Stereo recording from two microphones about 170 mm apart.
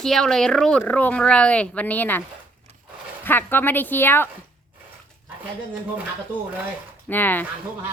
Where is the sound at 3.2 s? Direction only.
10° left (ahead or behind).